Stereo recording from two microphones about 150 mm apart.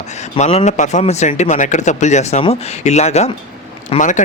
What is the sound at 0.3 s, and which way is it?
A man's voice, 50° left (ahead or behind).